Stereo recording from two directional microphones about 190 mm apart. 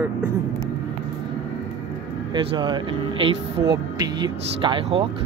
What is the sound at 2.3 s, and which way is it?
Speech, 25° right (ahead or behind).